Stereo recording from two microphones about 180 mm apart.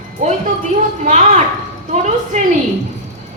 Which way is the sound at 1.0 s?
40° right (ahead or behind).